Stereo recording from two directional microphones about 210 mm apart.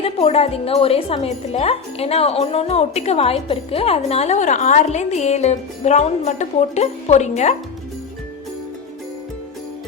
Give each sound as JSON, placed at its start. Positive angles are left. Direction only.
{"t": 0.0, "sound": "speech", "side_deg": 30}